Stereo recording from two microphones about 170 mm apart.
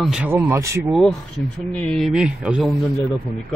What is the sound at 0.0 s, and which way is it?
Speech, 5° right (ahead or behind).